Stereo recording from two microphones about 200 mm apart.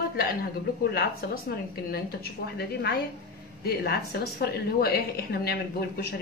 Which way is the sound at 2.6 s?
50° left (ahead or behind).